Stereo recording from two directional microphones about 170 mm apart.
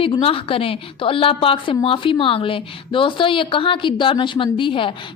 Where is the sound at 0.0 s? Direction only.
30° left (ahead or behind).